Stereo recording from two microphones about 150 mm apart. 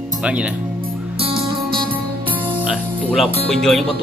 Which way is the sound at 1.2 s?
40° right (ahead or behind).